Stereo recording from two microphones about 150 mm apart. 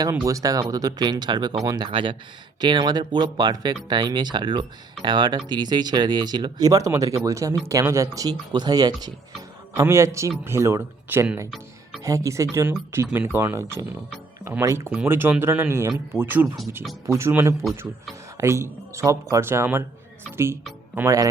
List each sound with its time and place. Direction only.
0.3 s speech: 25° right (ahead or behind)